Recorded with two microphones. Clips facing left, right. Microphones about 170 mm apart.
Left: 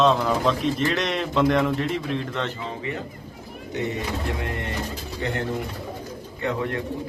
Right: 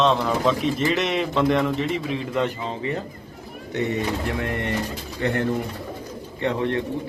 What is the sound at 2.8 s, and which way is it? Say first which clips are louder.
Speech: right 4 dB; 35° right (ahead or behind).